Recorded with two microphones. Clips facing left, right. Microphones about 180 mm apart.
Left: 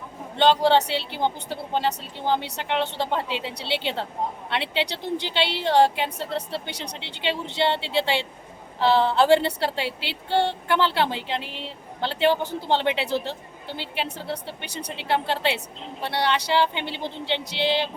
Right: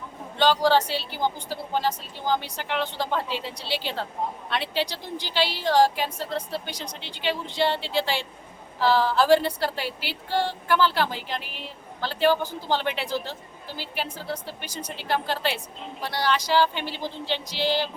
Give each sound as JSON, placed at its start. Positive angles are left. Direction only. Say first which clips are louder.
{"t": 0.3, "sound": "vehicle", "louder": "left 2 dB", "side_deg": 25}
{"t": 0.9, "sound": "a woman's voice", "louder": "left 2 dB", "side_deg": 25}
{"t": 3.4, "sound": "speech", "louder": "left 2 dB", "side_deg": 65}
{"t": 4.4, "sound": "a sound", "louder": "left 1 dB", "side_deg": 25}
{"t": 4.9, "sound": "speech", "louder": "left 6 dB", "side_deg": 65}
{"t": 5.3, "sound": "a woman's voice", "louder": "even", "side_deg": 25}
{"t": 6.7, "sound": "speech", "louder": "left 1 dB", "side_deg": 70}
{"t": 7.1, "sound": "a woman's voice", "louder": "even", "side_deg": 25}
{"t": 14.6, "sound": "speech", "louder": "left 1 dB", "side_deg": 65}
{"t": 14.9, "sound": "a woman's voice", "louder": "left 2 dB", "side_deg": 25}